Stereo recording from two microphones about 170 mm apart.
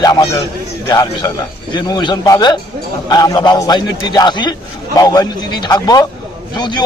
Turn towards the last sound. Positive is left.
turn(degrees=25)  # may be behind; listen again after turning